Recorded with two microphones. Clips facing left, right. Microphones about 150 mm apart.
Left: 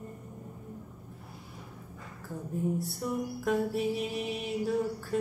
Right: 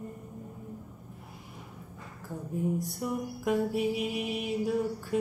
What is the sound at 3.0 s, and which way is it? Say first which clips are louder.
Music: even; 5° right (ahead or behind).